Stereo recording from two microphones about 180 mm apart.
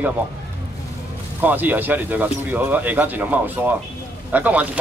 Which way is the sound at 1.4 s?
10° right (ahead or behind).